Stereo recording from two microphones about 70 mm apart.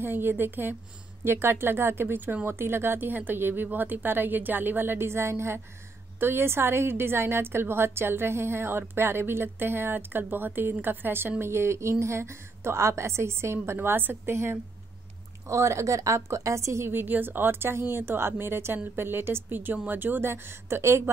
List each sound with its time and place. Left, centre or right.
0.0 s a woman's voice: right